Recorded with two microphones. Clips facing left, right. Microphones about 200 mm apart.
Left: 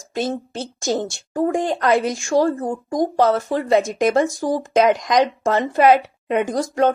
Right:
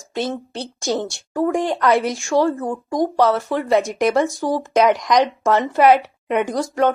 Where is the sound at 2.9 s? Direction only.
50° left (ahead or behind).